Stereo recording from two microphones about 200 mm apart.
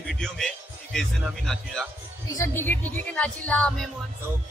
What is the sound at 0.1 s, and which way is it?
A man's voice, centre (ahead or behind).